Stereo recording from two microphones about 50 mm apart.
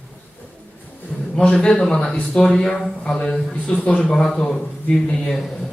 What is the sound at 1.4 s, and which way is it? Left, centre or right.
A man's voice, centre.